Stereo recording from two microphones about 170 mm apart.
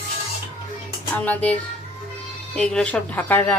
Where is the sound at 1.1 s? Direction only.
10° left (ahead or behind).